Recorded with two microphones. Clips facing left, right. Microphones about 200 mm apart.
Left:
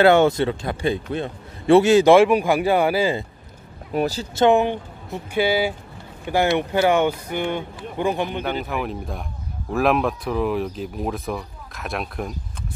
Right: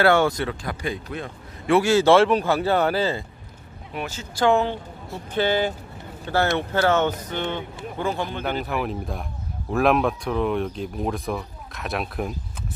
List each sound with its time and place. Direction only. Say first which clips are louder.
0.0 s speech: left 4 dB; 20° left (ahead or behind)
3.9 s speech: left 9 dB; 35° left (ahead or behind)
4.4 s speech: left 3 dB; 15° left (ahead or behind)
8.5 s speech: even; centre (ahead or behind)